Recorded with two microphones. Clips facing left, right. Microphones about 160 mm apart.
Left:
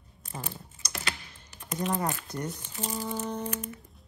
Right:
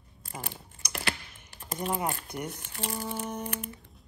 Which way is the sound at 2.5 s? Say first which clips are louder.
Left 1 dB; 65° right (ahead or behind).